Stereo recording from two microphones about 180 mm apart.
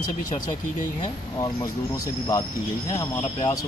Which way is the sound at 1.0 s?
20° left (ahead or behind).